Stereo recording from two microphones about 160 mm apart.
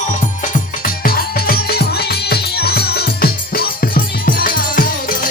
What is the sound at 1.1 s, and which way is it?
Music, 75° left (ahead or behind).